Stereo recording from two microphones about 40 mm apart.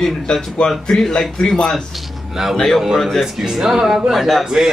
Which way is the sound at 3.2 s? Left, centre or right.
Centre.